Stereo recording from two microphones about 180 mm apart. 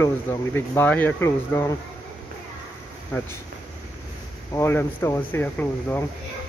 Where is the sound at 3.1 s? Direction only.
15° left (ahead or behind).